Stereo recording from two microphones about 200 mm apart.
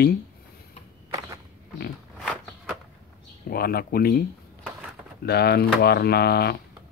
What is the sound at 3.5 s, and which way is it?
Speech, 50° left (ahead or behind).